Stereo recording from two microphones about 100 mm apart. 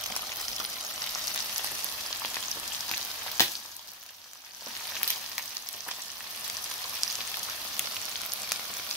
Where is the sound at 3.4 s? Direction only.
30° left (ahead or behind).